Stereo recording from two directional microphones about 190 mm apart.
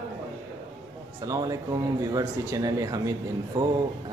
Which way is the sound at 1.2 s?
15° right (ahead or behind).